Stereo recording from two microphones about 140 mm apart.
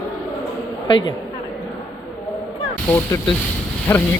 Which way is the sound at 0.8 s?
35° left (ahead or behind).